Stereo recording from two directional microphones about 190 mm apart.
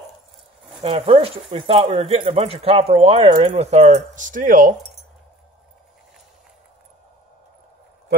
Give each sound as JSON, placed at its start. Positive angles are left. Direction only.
{"t": 0.8, "sound": "speech", "side_deg": -30}